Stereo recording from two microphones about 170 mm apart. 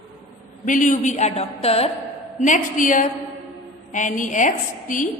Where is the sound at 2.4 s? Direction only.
50° left (ahead or behind).